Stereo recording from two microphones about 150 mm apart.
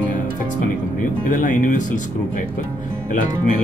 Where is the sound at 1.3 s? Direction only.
60° left (ahead or behind).